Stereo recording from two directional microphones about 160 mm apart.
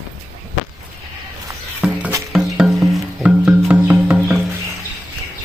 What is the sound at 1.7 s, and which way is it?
Music, 5° right (ahead or behind).